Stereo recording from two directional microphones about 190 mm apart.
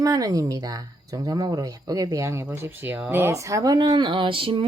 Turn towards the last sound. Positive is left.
turn(degrees=-25)  # may be behind; listen again after turning